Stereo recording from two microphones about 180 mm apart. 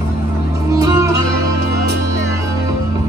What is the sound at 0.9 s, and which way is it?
Music, 20° right (ahead or behind).